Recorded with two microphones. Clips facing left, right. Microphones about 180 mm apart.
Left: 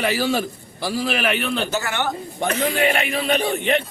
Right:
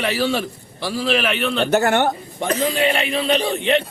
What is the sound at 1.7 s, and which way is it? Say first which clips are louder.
Speech: right 8 dB; 60° right (ahead or behind).